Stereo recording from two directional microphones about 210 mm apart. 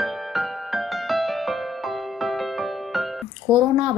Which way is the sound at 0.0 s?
Centre (ahead or behind).